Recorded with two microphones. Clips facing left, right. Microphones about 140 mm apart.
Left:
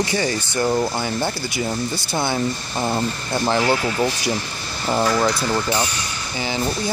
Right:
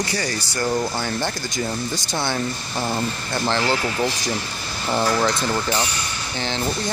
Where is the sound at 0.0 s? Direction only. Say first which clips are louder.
Left 4 dB; 20° left (ahead or behind).